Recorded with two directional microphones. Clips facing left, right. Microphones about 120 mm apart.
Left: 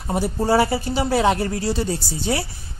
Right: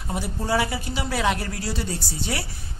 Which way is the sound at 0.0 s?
40° left (ahead or behind).